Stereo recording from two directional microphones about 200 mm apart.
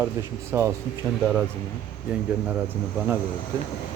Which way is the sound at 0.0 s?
10° right (ahead or behind).